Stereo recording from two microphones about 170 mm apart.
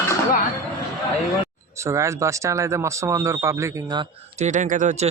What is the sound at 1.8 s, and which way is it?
Speech, 15° right (ahead or behind).